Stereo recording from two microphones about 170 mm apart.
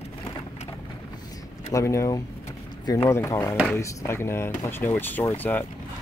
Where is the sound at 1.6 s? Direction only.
15° left (ahead or behind).